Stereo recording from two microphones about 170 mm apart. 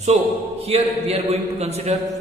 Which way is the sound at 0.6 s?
35° right (ahead or behind).